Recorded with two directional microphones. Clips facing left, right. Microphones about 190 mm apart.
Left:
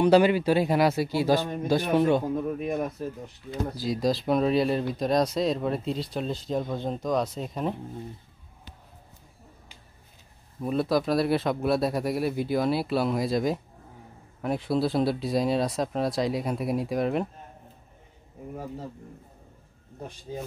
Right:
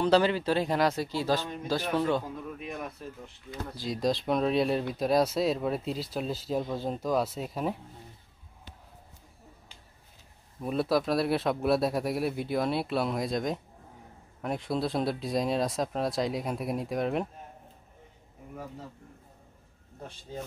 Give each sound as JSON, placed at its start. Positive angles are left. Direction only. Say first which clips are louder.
{"t": 0.0, "sound": "speech", "louder": "left 5 dB", "side_deg": 15}
{"t": 2.2, "sound": "speech", "louder": "left 10 dB", "side_deg": 45}
{"t": 3.7, "sound": "speech", "louder": "left 2 dB", "side_deg": 0}
{"t": 10.6, "sound": "speech", "louder": "left 2 dB", "side_deg": 0}
{"t": 20.0, "sound": "speech", "louder": "left 3 dB", "side_deg": 15}